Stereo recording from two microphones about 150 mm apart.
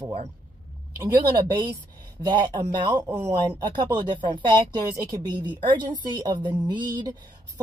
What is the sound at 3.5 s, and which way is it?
A woman's voice, 30° right (ahead or behind).